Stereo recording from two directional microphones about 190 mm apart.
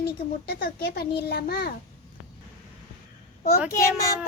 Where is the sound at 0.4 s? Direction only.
55° left (ahead or behind).